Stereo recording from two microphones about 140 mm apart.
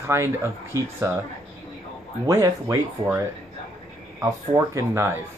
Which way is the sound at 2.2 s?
25° right (ahead or behind).